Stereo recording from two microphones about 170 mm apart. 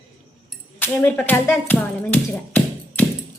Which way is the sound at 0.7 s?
10° left (ahead or behind).